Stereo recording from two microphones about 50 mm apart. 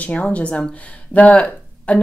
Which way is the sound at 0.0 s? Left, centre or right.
Left.